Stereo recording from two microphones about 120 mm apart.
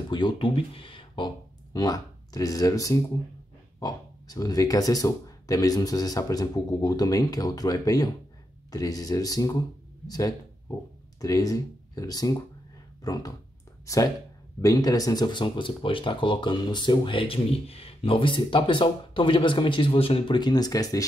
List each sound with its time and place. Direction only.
0.1 s speech: 40° left (ahead or behind)